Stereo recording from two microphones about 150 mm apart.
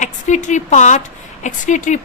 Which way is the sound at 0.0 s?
55° left (ahead or behind).